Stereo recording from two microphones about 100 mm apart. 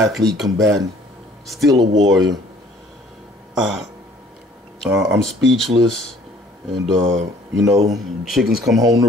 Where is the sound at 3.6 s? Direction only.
5° right (ahead or behind).